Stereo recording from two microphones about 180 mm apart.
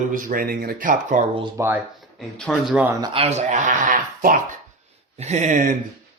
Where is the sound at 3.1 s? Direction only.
35° right (ahead or behind).